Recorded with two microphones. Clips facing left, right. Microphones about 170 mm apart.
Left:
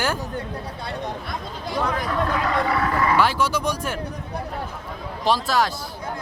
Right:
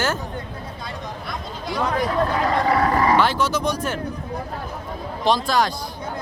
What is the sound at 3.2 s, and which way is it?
Speech, 10° left (ahead or behind).